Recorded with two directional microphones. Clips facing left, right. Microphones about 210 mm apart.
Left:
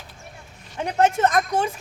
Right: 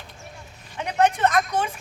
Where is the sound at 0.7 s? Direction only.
45° left (ahead or behind).